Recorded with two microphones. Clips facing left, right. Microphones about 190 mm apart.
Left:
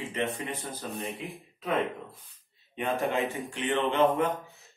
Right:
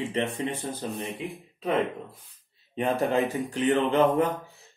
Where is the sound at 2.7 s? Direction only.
35° right (ahead or behind).